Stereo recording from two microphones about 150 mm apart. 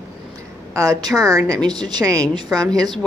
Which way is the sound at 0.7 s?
20° right (ahead or behind).